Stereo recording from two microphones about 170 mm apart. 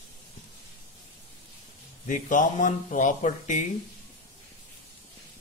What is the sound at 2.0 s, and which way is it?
Speech, 50° left (ahead or behind).